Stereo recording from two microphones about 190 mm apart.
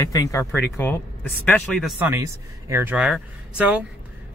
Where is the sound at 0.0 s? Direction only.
15° left (ahead or behind).